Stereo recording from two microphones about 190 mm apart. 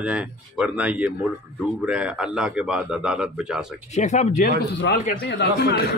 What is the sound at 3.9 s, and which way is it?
Speech, 40° left (ahead or behind).